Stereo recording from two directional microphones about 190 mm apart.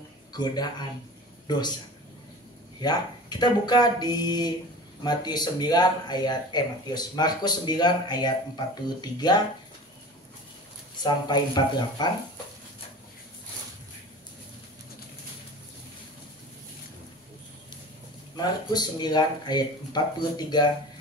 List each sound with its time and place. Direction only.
0.3 s speech: 20° left (ahead or behind)
2.8 s speech: 20° left (ahead or behind)
11.0 s speech: 20° left (ahead or behind)
18.3 s speech: 20° left (ahead or behind)